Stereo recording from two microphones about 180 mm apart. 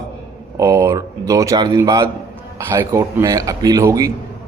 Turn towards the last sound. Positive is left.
turn(degrees=-20)  # may be behind; listen again after turning